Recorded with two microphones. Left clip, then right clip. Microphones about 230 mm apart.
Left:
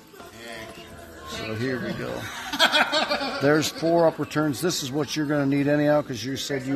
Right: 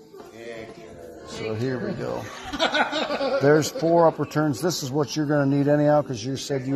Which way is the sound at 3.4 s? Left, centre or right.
Centre.